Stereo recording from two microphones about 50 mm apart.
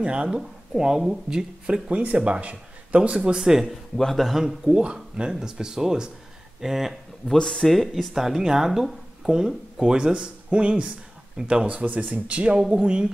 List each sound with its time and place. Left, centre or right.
0.0 s speech: right
0.3 s speech: centre
1.7 s speech: right
3.6 s speech: centre
4.6 s speech: centre
7.3 s speech: centre
7.6 s speech: centre; by 12.4 s right
12.4 s speech: centre